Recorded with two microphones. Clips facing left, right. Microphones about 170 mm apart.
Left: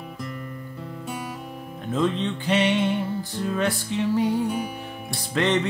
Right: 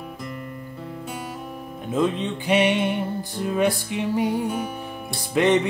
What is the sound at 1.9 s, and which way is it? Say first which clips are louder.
Music: right 1 dB; 10° right (ahead or behind).